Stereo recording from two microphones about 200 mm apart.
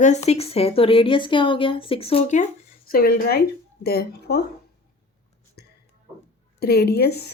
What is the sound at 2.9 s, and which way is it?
A woman's voice, 50° left (ahead or behind).